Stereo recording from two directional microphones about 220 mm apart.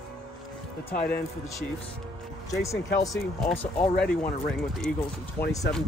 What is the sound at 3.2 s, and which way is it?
Speech, centre (ahead or behind).